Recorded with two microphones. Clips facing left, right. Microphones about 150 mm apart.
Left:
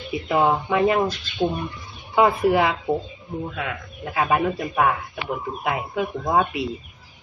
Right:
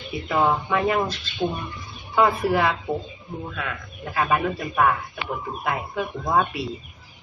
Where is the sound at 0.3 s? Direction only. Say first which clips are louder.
Left 2 dB; 15° left (ahead or behind).